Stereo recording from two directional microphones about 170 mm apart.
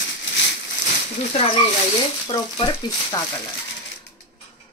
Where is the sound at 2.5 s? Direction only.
25° left (ahead or behind).